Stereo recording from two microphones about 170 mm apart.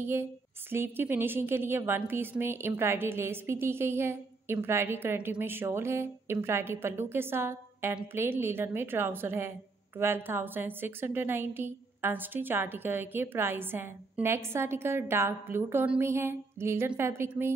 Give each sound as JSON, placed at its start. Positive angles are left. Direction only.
{"t": 0.0, "sound": "a woman's voice", "side_deg": -15}